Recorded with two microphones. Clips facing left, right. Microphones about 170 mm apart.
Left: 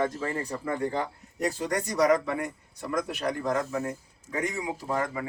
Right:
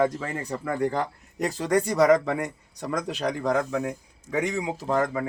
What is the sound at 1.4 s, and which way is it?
A man's voice, 90° right.